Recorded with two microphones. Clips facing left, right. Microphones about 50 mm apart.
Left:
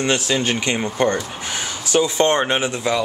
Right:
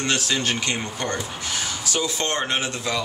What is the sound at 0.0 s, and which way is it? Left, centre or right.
Speech, centre.